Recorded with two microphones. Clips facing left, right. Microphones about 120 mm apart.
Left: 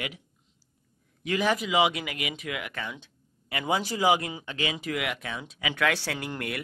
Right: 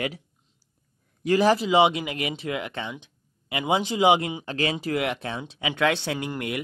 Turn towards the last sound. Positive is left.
turn(degrees=-20)  # may be behind; listen again after turning